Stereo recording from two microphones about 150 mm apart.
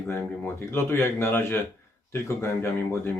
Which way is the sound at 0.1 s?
15° left (ahead or behind).